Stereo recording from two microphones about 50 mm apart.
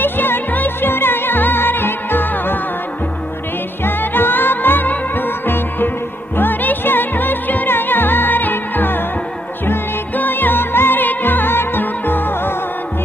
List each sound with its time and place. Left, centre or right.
0.0 s music: left
3.8 s music: left